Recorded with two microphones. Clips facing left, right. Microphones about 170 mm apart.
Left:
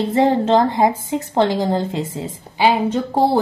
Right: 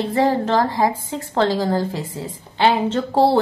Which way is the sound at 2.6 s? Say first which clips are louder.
Left 1 dB; 10° left (ahead or behind).